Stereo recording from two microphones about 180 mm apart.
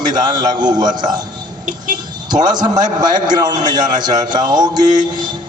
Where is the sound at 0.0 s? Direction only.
25° right (ahead or behind).